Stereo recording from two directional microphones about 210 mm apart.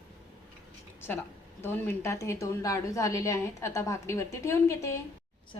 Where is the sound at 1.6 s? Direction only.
10° left (ahead or behind).